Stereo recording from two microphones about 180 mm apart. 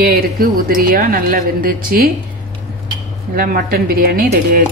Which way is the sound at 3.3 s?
55° right (ahead or behind).